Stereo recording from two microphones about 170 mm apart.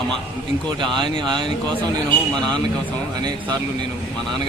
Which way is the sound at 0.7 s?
30° right (ahead or behind).